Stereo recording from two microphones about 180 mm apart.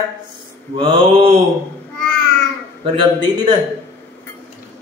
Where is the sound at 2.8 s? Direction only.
30° right (ahead or behind).